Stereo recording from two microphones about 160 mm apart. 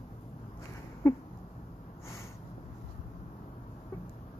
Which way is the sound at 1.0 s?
15° left (ahead or behind).